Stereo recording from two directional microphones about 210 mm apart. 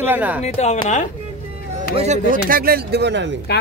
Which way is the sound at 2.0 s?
35° right (ahead or behind).